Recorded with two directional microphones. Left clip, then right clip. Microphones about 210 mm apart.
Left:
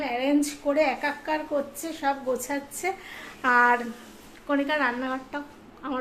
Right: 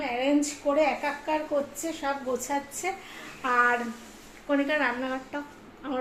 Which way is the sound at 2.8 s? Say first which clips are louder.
Left 5 dB; 10° left (ahead or behind).